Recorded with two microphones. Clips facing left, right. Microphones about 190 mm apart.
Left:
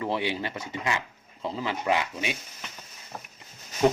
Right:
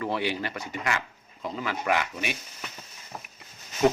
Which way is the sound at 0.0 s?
20° left (ahead or behind).